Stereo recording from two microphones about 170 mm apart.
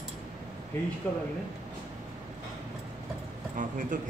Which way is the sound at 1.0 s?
10° left (ahead or behind).